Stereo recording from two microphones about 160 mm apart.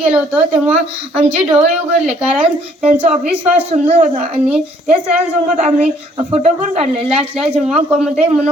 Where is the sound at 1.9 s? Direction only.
45° right (ahead or behind).